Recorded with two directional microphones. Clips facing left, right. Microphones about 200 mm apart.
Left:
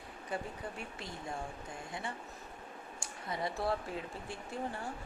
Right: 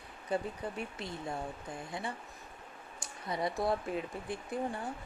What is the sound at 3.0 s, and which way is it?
Speech, 20° right (ahead or behind).